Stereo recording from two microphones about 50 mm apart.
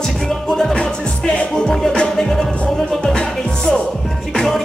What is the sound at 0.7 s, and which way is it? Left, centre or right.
Music, centre.